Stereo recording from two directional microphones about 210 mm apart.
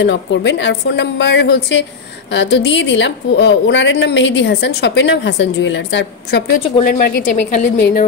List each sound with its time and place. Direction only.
0.0 s a woman's voice: 60° left (ahead or behind)